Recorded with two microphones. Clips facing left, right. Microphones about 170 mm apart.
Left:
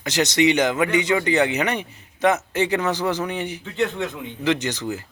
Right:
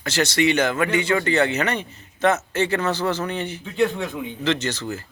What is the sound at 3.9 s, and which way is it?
Speech, 15° right (ahead or behind).